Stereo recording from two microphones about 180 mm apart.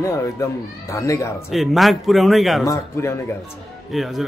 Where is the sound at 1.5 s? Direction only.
Centre (ahead or behind).